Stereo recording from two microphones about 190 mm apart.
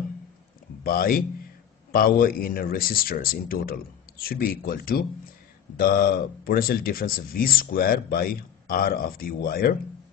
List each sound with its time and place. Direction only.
0.8 s speech: 50° left (ahead or behind)